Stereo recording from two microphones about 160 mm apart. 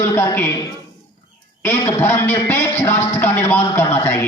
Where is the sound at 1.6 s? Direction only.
15° left (ahead or behind).